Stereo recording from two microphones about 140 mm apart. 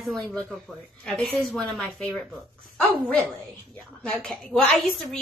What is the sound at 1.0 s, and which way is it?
A woman's voice, 5° left (ahead or behind).